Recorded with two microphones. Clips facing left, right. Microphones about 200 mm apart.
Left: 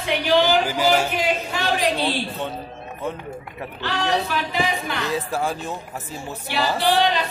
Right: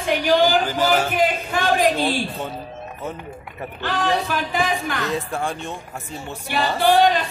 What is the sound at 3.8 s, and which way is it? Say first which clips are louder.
Speech: right 1 dB; 50° right (ahead or behind).